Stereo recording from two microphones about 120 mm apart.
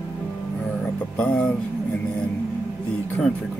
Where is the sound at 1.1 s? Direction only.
10° left (ahead or behind).